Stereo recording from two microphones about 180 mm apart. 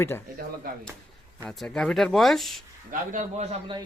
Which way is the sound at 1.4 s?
5° left (ahead or behind).